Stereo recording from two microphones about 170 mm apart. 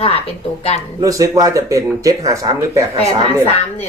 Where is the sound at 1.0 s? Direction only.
20° right (ahead or behind).